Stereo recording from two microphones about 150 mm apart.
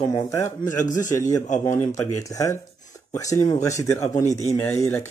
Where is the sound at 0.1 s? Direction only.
20° left (ahead or behind).